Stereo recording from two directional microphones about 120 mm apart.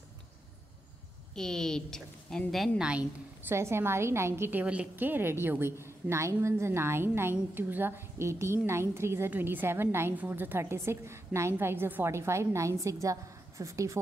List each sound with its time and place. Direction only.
1.3 s a woman's voice: 5° left (ahead or behind)
2.8 s a woman's voice: 10° right (ahead or behind)
3.5 s a woman's voice: 20° right (ahead or behind)